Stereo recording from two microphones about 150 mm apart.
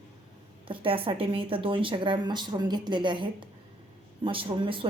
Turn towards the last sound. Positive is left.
turn(degrees=-35)  # may be behind; listen again after turning